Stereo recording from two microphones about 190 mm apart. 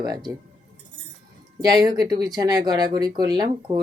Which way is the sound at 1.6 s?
20° right (ahead or behind).